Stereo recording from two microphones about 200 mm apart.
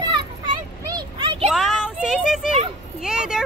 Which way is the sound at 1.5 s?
Centre (ahead or behind).